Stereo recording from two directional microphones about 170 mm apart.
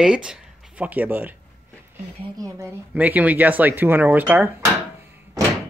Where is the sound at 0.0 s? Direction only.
5° right (ahead or behind).